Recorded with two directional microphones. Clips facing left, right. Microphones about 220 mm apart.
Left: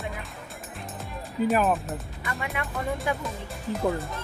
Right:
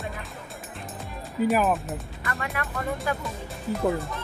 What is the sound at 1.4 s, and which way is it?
Speech, centre (ahead or behind).